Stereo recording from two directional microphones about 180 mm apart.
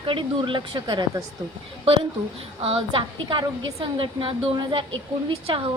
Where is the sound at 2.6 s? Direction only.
30° right (ahead or behind).